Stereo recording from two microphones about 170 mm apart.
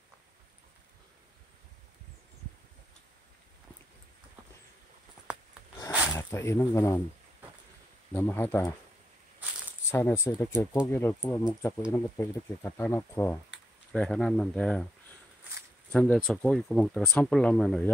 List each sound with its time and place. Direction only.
5.8 s a sound: 15° left (ahead or behind)
8.1 s speech: 10° left (ahead or behind)
9.8 s speech: 15° left (ahead or behind)
13.9 s speech: 5° left (ahead or behind)
15.9 s speech: 5° left (ahead or behind)